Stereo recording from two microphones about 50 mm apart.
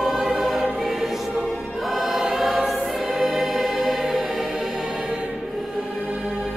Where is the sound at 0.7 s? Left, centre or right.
Centre.